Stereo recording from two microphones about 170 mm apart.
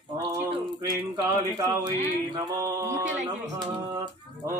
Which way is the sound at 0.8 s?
20° right (ahead or behind).